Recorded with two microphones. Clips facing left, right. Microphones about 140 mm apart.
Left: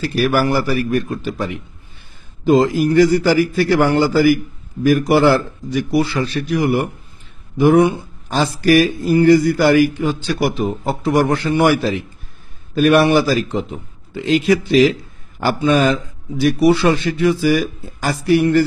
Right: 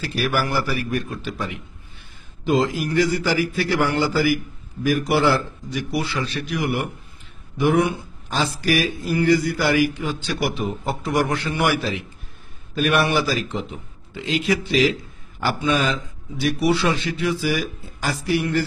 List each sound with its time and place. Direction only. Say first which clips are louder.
0.0 s a man's voice: left 7 dB; 45° left (ahead or behind)